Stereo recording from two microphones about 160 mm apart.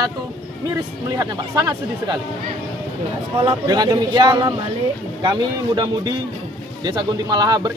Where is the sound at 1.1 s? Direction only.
20° right (ahead or behind).